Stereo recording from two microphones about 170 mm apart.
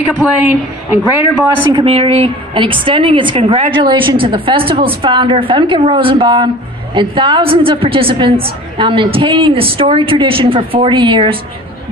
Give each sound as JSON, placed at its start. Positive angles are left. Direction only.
{"t": 0.1, "sound": "a woman's voice", "side_deg": -10}
{"t": 1.7, "sound": "a woman's voice", "side_deg": -30}